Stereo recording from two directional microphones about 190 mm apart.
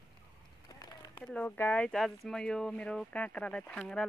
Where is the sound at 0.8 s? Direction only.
20° left (ahead or behind).